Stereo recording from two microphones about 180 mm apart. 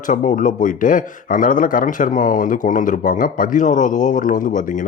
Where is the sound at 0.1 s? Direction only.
45° left (ahead or behind).